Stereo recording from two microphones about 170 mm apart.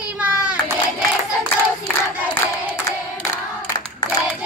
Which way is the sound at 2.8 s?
20° left (ahead or behind).